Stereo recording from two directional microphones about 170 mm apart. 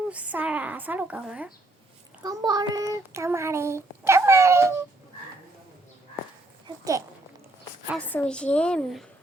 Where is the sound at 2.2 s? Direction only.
25° right (ahead or behind).